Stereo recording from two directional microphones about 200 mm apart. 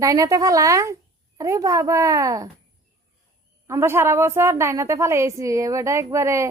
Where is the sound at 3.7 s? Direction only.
15° right (ahead or behind).